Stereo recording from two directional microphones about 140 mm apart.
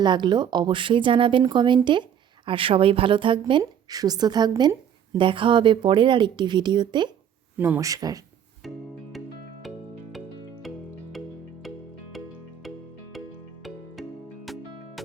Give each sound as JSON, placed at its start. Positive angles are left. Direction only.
{"t": 0.0, "sound": "a woman's voice", "side_deg": -35}
{"t": 7.6, "sound": "speech", "side_deg": -20}
{"t": 9.1, "sound": "music", "side_deg": 0}
{"t": 12.1, "sound": "music", "side_deg": 0}